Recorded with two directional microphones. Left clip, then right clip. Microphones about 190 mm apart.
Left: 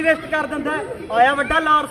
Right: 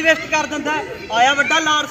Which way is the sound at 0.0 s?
15° left (ahead or behind).